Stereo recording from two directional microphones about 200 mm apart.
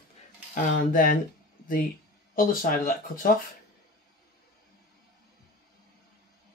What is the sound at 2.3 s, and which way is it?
Speech, 45° left (ahead or behind).